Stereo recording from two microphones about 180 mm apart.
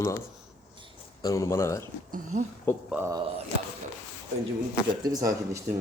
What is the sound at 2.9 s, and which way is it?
Speech, 10° right (ahead or behind).